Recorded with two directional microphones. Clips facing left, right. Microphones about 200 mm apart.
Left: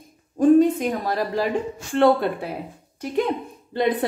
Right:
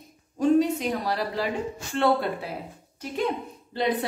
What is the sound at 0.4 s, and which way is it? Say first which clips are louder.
A woman's voice: left 6 dB; 50° left (ahead or behind).